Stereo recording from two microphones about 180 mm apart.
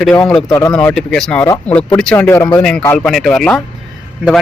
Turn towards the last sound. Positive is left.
turn(degrees=-5)  # may be behind; listen again after turning